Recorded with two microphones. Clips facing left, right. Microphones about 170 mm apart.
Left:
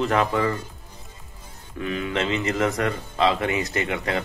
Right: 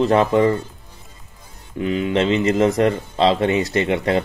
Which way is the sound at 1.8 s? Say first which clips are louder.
Right 7 dB; 25° right (ahead or behind).